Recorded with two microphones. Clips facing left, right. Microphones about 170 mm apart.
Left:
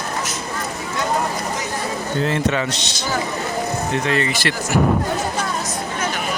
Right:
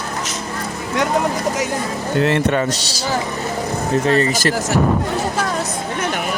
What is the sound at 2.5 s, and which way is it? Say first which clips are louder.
Speech: right 3 dB; 40° right (ahead or behind).